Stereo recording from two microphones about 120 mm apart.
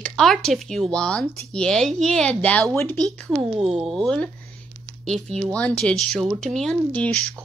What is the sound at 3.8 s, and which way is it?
Speech, centre (ahead or behind).